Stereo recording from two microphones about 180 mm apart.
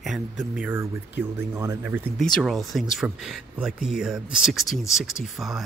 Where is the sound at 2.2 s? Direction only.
5° left (ahead or behind).